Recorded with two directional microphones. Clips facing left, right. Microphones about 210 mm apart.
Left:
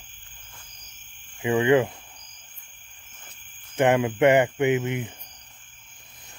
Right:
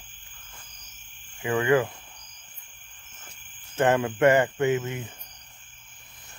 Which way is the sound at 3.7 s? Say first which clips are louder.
Left 2 dB; 15° left (ahead or behind).